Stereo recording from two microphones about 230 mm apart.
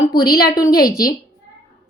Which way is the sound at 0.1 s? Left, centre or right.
Left.